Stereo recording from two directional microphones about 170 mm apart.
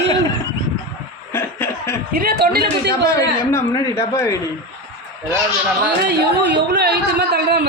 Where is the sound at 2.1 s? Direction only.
60° right (ahead or behind).